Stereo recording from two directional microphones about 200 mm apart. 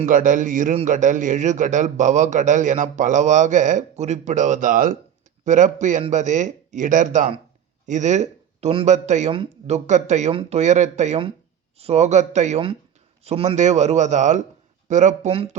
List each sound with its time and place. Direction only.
0.0 s a man's voice: 40° right (ahead or behind)